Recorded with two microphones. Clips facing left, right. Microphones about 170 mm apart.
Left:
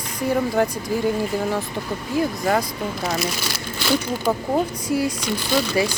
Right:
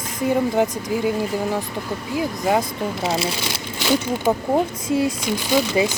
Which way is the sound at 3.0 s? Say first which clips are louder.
Right 2 dB; 25° right (ahead or behind).